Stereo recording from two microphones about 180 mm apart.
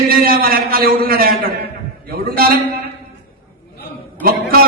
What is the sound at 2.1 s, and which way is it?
Speech, 55° right (ahead or behind).